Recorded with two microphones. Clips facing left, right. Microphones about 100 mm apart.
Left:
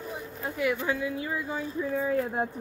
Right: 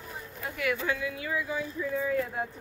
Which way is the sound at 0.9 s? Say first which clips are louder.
Left 2 dB; 30° left (ahead or behind).